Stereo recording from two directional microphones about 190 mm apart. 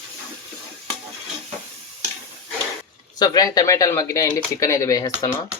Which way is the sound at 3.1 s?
20° left (ahead or behind).